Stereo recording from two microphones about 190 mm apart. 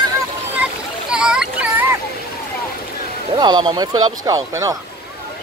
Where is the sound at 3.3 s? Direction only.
20° right (ahead or behind).